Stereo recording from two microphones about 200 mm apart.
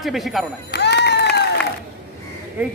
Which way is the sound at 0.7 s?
55° left (ahead or behind).